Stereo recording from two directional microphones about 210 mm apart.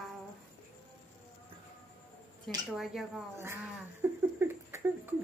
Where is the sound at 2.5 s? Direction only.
Centre (ahead or behind).